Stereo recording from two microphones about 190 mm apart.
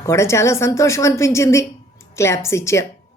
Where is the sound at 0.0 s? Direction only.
15° left (ahead or behind).